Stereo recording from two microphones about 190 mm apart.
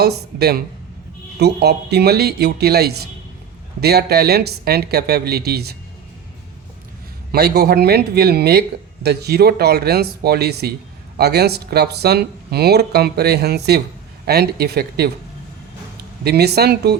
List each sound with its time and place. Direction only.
0.0 s speech: 55° right (ahead or behind)
7.3 s speech: 55° right (ahead or behind)
16.2 s speech: 60° right (ahead or behind)